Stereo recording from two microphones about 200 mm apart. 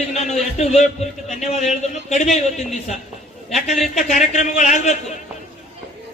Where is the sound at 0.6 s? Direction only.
35° left (ahead or behind).